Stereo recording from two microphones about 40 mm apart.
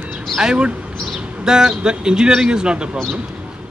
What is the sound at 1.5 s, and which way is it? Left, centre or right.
A man's voice, centre.